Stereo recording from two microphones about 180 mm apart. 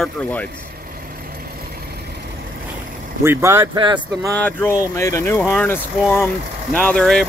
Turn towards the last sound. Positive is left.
turn(degrees=5)  # may be behind; listen again after turning